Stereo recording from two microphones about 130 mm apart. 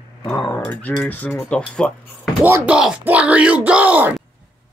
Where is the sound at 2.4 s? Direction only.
10° right (ahead or behind).